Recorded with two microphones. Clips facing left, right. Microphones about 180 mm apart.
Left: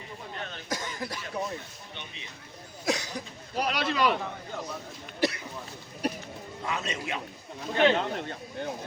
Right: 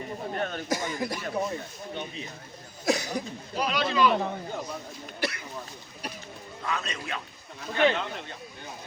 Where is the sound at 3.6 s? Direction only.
65° left (ahead or behind).